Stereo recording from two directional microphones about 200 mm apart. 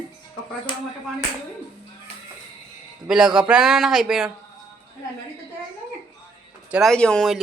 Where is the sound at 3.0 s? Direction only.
5° right (ahead or behind).